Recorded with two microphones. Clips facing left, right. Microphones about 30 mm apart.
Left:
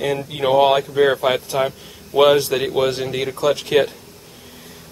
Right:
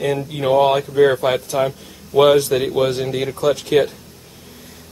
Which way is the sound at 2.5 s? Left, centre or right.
Centre.